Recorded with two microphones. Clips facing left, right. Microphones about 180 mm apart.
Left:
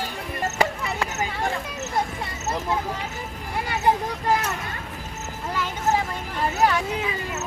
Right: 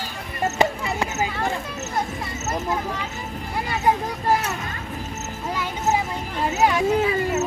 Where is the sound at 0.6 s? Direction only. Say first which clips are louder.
Right 3 dB; 20° right (ahead or behind).